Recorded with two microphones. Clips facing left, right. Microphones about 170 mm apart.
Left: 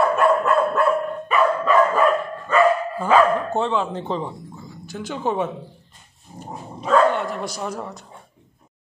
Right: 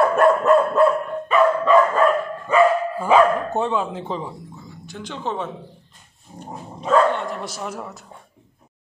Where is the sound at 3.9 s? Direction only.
5° right (ahead or behind).